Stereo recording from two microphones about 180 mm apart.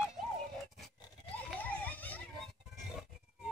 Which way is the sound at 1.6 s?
10° left (ahead or behind).